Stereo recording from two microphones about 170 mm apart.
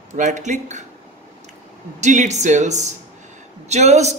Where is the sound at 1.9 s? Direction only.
45° right (ahead or behind).